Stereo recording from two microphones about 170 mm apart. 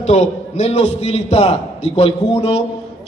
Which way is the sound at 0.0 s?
40° left (ahead or behind).